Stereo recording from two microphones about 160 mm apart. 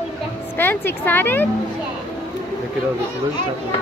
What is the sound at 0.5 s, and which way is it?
Speech, 15° left (ahead or behind).